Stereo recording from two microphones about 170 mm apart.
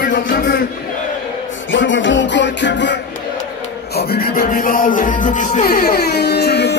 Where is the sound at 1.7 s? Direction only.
90° left.